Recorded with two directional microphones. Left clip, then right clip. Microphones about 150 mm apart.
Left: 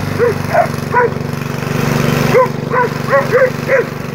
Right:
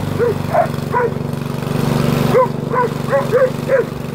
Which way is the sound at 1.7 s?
15° left (ahead or behind).